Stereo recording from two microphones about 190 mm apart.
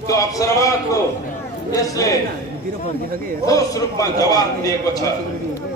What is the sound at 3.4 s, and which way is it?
A man's voice, 15° left (ahead or behind).